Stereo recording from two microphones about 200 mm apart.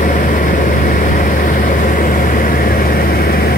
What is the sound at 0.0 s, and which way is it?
Vehicle, 40° left (ahead or behind).